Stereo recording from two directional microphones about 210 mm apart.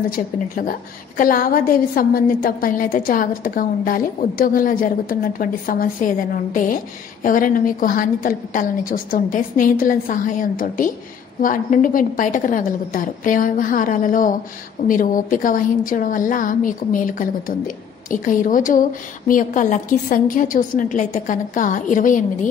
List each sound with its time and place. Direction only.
0.1 s a woman's voice: 40° left (ahead or behind)